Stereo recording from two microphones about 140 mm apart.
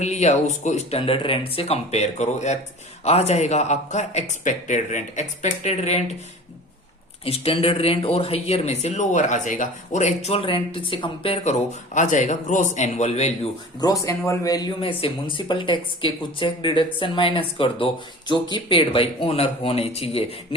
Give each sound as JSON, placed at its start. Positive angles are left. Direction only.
{"t": 0.0, "sound": "speech", "side_deg": 55}
{"t": 7.3, "sound": "speech", "side_deg": 45}
{"t": 11.4, "sound": "speech", "side_deg": 55}
{"t": 13.8, "sound": "a man's voice", "side_deg": 25}
{"t": 14.8, "sound": "speech", "side_deg": 40}